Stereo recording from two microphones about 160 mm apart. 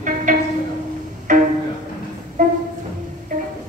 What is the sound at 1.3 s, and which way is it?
Music, 50° right (ahead or behind).